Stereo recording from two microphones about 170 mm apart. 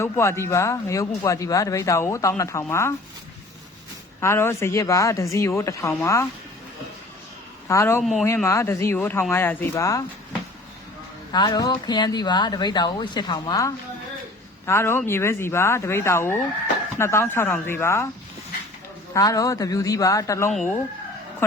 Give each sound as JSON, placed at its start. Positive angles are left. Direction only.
{"t": 0.0, "sound": "speech", "side_deg": 15}
{"t": 4.2, "sound": "speech", "side_deg": 15}
{"t": 7.7, "sound": "speech", "side_deg": 15}
{"t": 11.3, "sound": "speech", "side_deg": 25}
{"t": 19.1, "sound": "speech", "side_deg": 20}